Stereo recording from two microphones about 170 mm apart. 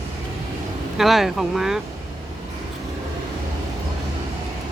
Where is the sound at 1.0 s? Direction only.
Centre (ahead or behind).